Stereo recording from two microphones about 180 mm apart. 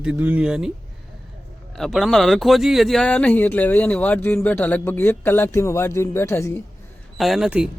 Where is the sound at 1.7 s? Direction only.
Centre (ahead or behind).